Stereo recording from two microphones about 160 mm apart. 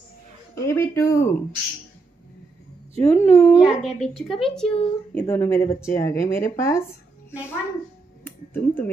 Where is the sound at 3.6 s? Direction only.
5° right (ahead or behind); by 6.8 s 15° left (ahead or behind).